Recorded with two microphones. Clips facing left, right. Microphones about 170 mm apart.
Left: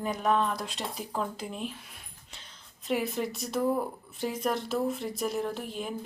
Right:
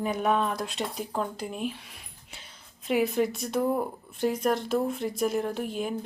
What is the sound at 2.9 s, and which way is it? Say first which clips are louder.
Speech: right 5 dB; centre (ahead or behind).